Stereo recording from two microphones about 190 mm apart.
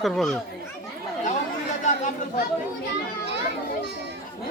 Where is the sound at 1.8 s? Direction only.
40° left (ahead or behind).